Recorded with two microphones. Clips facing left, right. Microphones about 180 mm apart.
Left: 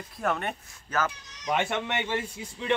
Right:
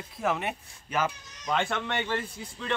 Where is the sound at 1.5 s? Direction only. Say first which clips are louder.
Left 1 dB; 15° left (ahead or behind).